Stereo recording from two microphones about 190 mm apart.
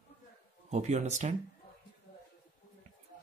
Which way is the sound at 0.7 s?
35° right (ahead or behind).